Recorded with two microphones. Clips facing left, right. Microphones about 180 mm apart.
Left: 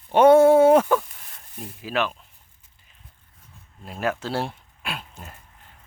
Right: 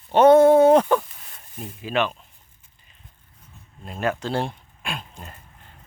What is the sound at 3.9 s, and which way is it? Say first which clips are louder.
Speech: right 1 dB; 5° left (ahead or behind).